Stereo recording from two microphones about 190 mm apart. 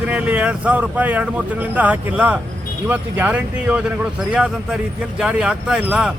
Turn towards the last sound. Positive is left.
turn(degrees=-5)  # may be behind; listen again after turning